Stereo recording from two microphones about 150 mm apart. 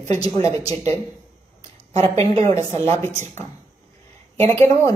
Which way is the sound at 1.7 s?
45° right (ahead or behind).